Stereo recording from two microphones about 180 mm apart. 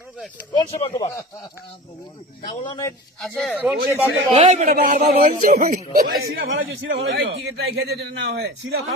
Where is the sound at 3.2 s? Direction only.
Centre (ahead or behind).